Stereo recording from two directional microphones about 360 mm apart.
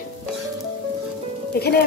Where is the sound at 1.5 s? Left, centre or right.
Left.